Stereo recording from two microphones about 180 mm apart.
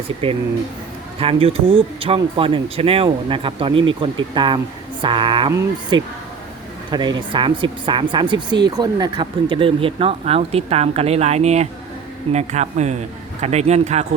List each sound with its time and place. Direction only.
0.2 s speech: 30° right (ahead or behind)